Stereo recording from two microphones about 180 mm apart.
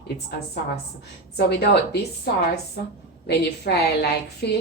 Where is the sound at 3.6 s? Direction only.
65° left (ahead or behind).